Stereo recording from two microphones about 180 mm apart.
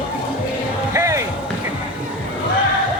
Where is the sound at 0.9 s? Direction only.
15° right (ahead or behind).